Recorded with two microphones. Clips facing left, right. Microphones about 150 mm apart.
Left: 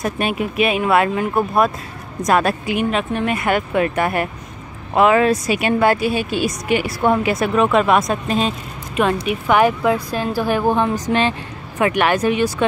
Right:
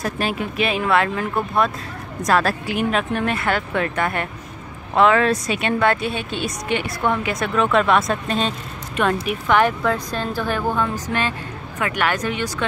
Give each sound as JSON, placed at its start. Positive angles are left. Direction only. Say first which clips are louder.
{"t": 0.2, "sound": "speech", "louder": "left 4 dB", "side_deg": -30}
{"t": 0.8, "sound": "speech", "louder": "left 3 dB", "side_deg": 20}
{"t": 2.7, "sound": "speech", "louder": "even", "side_deg": 0}
{"t": 3.3, "sound": "speech", "louder": "left 4 dB", "side_deg": 15}